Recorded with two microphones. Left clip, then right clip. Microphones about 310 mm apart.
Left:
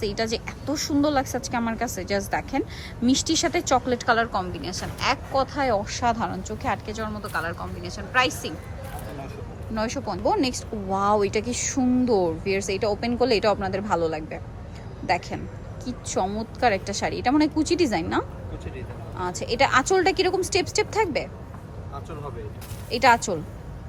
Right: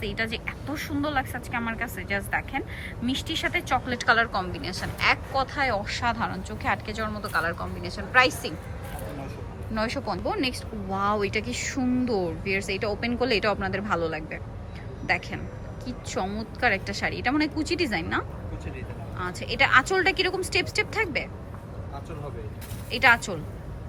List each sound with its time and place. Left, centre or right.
0.0 s speech: centre
9.7 s speech: centre
22.9 s speech: centre